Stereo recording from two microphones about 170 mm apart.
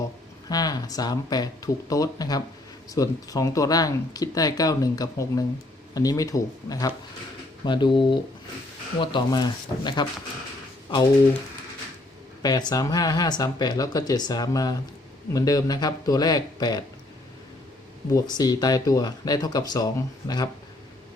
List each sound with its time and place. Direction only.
0.4 s speech: 25° left (ahead or behind)
12.4 s speech: 25° left (ahead or behind)
18.1 s speech: 25° left (ahead or behind)